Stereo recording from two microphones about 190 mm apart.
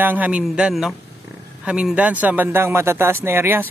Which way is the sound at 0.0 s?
10° right (ahead or behind).